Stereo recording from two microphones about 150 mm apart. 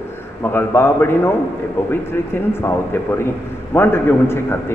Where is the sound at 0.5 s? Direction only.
15° left (ahead or behind).